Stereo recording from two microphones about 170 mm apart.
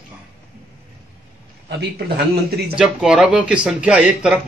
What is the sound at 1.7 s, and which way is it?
Speech, 70° right (ahead or behind).